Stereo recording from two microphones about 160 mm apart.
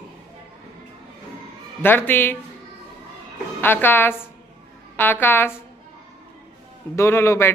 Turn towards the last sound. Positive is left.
turn(degrees=15)  # may be behind; listen again after turning